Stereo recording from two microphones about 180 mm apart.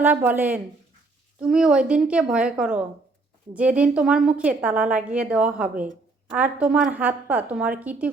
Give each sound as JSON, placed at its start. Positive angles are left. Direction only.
{"t": 0.0, "sound": "a woman's voice", "side_deg": -10}